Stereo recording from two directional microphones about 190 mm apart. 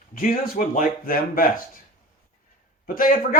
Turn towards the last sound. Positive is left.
turn(degrees=45)  # may be behind; listen again after turning